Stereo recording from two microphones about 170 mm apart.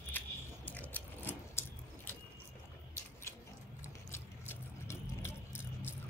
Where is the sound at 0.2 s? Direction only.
10° left (ahead or behind).